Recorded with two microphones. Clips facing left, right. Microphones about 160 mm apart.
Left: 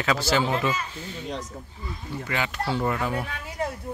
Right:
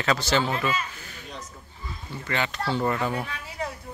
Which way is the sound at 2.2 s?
5° left (ahead or behind).